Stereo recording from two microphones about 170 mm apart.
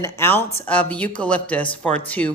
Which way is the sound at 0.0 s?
15° left (ahead or behind).